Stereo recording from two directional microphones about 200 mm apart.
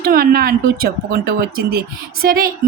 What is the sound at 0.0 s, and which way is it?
A woman's voice, 45° right (ahead or behind).